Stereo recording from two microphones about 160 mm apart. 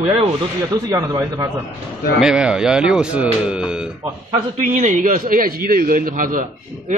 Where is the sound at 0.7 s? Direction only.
20° right (ahead or behind).